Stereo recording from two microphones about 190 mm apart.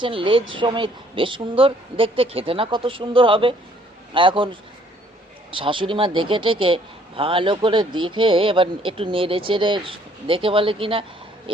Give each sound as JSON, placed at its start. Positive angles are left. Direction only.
{"t": 0.0, "sound": "speech", "side_deg": -25}
{"t": 5.5, "sound": "speech", "side_deg": -25}